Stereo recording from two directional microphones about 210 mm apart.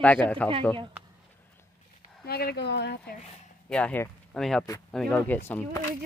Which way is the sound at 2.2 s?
50° left (ahead or behind).